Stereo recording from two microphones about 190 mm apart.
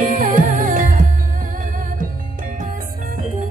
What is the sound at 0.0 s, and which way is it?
Music, 45° right (ahead or behind).